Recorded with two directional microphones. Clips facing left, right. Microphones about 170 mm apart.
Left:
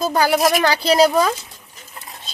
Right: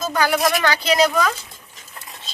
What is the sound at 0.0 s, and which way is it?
A woman's voice, 30° left (ahead or behind).